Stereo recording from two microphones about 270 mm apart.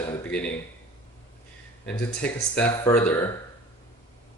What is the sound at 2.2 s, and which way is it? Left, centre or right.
Speech, centre.